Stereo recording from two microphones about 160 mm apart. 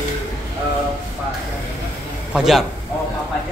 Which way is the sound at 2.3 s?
Centre (ahead or behind).